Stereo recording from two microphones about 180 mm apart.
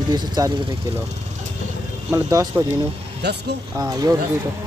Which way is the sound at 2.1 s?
20° right (ahead or behind).